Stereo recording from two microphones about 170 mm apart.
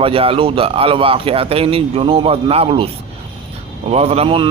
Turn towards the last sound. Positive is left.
turn(degrees=-35)  # may be behind; listen again after turning